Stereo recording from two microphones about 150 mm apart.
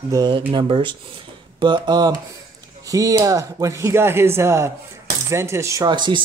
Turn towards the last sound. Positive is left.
turn(degrees=-30)  # may be behind; listen again after turning